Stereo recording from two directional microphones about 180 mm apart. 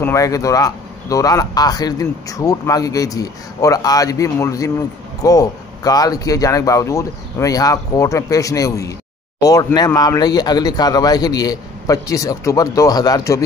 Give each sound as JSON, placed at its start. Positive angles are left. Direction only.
{"t": 0.0, "sound": "speech", "side_deg": 15}